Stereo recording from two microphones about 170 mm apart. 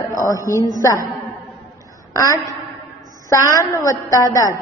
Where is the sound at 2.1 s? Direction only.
20° left (ahead or behind).